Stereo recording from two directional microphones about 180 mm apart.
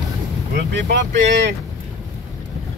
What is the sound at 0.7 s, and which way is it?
Speech, 65° right (ahead or behind).